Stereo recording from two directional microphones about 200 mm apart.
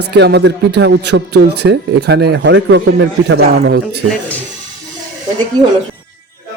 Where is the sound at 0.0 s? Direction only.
55° right (ahead or behind).